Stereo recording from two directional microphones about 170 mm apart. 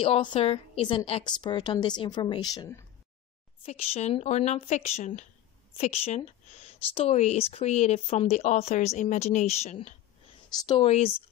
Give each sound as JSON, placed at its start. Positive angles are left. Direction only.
{"t": 0.0, "sound": "a woman's voice", "side_deg": 30}
{"t": 3.6, "sound": "speech", "side_deg": 40}